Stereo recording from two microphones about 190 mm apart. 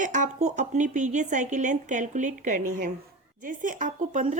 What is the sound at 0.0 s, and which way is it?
Speech, 40° right (ahead or behind).